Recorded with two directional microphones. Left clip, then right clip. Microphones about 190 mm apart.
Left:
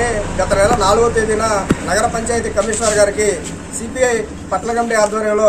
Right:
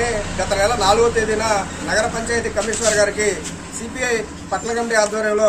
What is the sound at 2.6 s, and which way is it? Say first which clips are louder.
Speech: left 4 dB; 15° right (ahead or behind).